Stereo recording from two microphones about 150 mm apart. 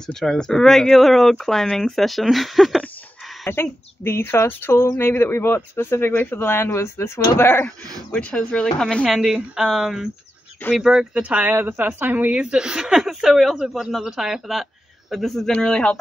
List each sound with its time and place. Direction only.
0.0 s speech: 5° left (ahead or behind)
3.4 s a woman's voice: 15° left (ahead or behind)